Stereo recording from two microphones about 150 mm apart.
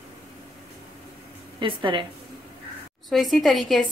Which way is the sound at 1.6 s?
35° right (ahead or behind).